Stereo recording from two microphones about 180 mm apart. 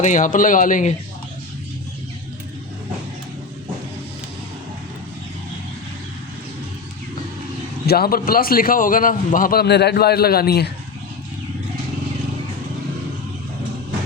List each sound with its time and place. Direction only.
0.0 s speech: 45° left (ahead or behind)
7.9 s a man's voice: 60° left (ahead or behind)